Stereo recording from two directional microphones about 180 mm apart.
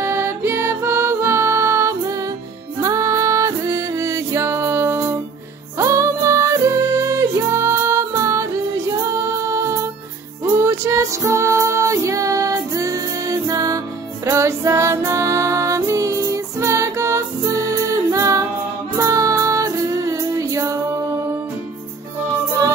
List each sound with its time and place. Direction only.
0.0 s music: 15° right (ahead or behind)